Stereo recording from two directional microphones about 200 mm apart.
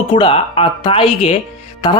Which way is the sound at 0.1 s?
25° left (ahead or behind).